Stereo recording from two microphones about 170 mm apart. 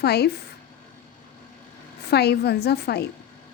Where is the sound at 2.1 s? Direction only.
70° left (ahead or behind).